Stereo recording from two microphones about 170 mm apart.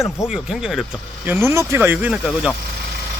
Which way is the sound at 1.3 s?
15° right (ahead or behind).